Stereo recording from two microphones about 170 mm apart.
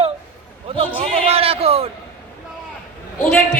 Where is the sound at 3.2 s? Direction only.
10° left (ahead or behind).